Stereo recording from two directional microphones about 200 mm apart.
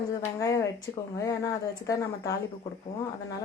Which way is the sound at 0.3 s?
15° left (ahead or behind).